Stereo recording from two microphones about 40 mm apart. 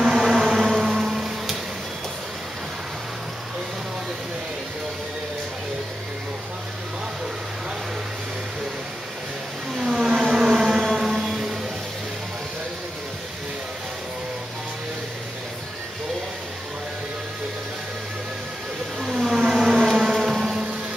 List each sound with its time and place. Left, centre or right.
0.1 s a sound: centre
9.8 s vehicle: centre
10.2 s civil defense siren: centre
10.8 s a sound: centre
18.9 s vehicle: centre
20.3 s music: centre